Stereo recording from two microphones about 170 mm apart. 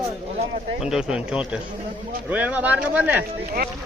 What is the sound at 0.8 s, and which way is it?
Speech, 5° right (ahead or behind).